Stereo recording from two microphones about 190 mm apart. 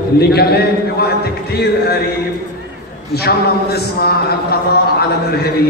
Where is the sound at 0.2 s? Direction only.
55° left (ahead or behind).